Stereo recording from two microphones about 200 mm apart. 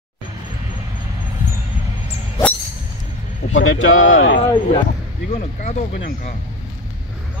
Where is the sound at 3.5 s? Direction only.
75° left (ahead or behind).